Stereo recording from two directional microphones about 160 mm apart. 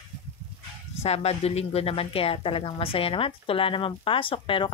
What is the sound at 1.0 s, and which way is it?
A woman's voice, 40° left (ahead or behind).